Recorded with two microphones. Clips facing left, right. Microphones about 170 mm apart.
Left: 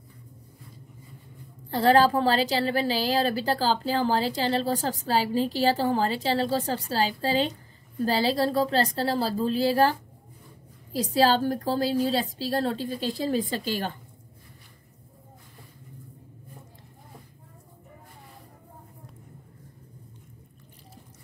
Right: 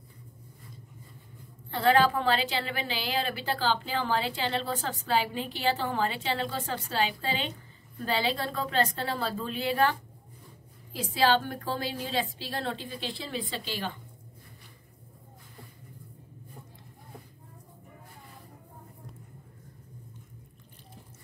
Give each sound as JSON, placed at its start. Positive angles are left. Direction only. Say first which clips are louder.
{"t": 1.7, "sound": "a woman's voice", "louder": "left 4 dB", "side_deg": 35}